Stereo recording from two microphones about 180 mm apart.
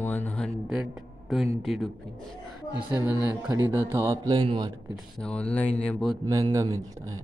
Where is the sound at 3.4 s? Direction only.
15° right (ahead or behind).